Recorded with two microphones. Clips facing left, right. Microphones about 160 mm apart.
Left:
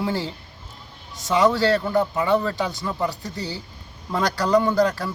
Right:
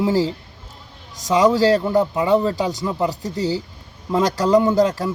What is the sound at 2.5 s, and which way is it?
Speech, 40° right (ahead or behind).